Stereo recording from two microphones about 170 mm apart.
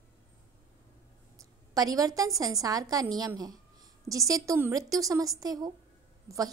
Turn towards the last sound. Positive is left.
turn(degrees=-20)  # may be behind; listen again after turning